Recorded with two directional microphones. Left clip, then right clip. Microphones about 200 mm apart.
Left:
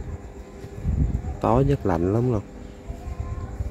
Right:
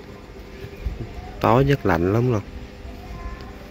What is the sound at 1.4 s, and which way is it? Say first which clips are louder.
Speech: right 3 dB; centre (ahead or behind).